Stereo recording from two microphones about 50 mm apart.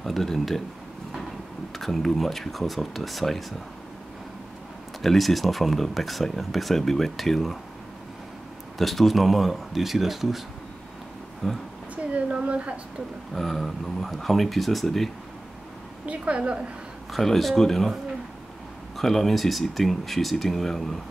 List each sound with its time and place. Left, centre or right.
0.0 s speech: centre
1.8 s speech: centre
5.0 s speech: centre
8.7 s speech: centre
11.4 s speech: centre
11.9 s a sound: right
13.3 s speech: centre
16.1 s a woman's voice: right
17.1 s speech: centre
18.9 s speech: centre